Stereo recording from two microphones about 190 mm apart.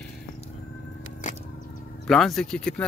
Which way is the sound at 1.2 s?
40° left (ahead or behind).